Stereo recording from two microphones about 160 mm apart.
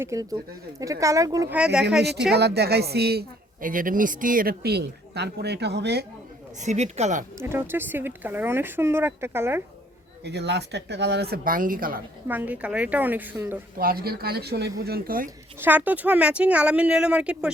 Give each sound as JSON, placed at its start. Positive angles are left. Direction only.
{"t": 0.0, "sound": "a woman's voice", "side_deg": -20}
{"t": 1.5, "sound": "speech", "side_deg": -5}
{"t": 2.3, "sound": "a woman's voice", "side_deg": -90}
{"t": 6.6, "sound": "speech", "side_deg": -45}
{"t": 7.3, "sound": "speech", "side_deg": -15}
{"t": 10.2, "sound": "speech", "side_deg": -90}
{"t": 12.3, "sound": "speech", "side_deg": -10}
{"t": 13.7, "sound": "speech", "side_deg": -70}
{"t": 15.6, "sound": "speech", "side_deg": -10}